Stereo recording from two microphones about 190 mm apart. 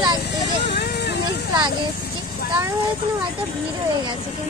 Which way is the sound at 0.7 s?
60° left (ahead or behind).